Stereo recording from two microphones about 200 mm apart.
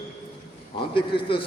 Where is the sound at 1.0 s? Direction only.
25° left (ahead or behind).